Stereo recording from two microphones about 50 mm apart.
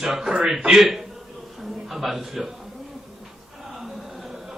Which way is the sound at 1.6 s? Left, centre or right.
Centre.